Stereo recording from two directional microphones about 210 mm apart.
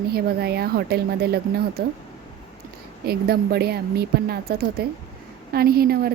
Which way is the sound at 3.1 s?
50° right (ahead or behind).